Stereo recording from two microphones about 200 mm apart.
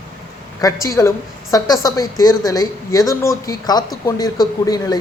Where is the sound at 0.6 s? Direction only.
15° left (ahead or behind).